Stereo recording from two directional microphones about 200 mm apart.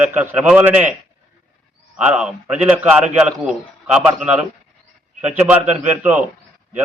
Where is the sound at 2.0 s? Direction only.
5° right (ahead or behind).